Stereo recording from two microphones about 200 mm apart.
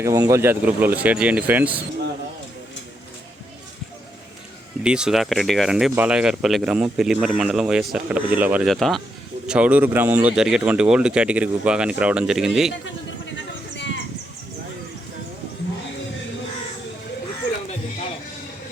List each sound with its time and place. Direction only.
0.0 s speech: 15° right (ahead or behind)
4.8 s speech: 5° right (ahead or behind)
13.7 s a sound: 65° left (ahead or behind)